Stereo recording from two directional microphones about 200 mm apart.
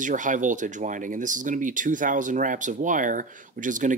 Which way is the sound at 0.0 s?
40° right (ahead or behind).